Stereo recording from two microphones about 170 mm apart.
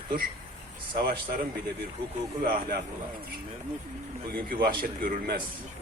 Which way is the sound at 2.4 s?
60° right (ahead or behind).